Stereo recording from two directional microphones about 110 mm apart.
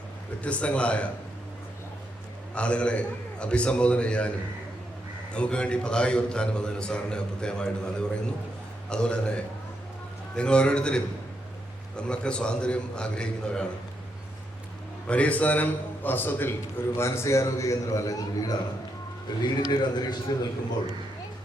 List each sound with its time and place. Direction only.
0.4 s a man's voice: 10° left (ahead or behind)
2.6 s a man's voice: 10° left (ahead or behind)
5.3 s a man's voice: 10° left (ahead or behind)
15.0 s a man's voice: 10° left (ahead or behind); by 20.1 s 40° left (ahead or behind)